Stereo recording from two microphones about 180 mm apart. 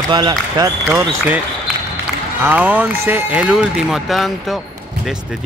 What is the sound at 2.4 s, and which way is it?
Speech, 10° right (ahead or behind).